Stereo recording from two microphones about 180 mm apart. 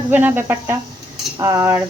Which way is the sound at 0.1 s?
10° right (ahead or behind).